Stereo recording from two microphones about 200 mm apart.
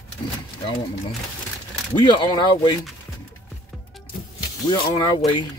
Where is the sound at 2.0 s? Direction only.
20° left (ahead or behind).